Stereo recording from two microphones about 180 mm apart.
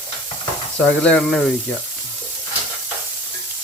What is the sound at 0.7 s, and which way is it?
Speech, 5° left (ahead or behind).